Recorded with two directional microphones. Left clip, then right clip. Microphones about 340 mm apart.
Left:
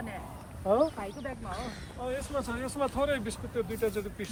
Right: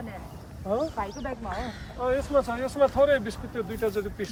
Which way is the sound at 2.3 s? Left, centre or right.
Right.